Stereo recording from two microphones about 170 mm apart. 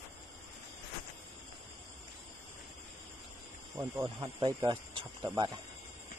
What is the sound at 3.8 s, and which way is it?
Speech, 10° right (ahead or behind).